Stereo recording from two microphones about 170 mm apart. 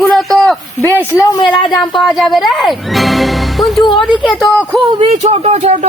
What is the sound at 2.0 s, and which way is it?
A woman's voice, centre (ahead or behind).